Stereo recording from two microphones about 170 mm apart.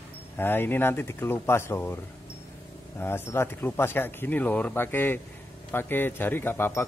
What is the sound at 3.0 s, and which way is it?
Speech, 15° left (ahead or behind).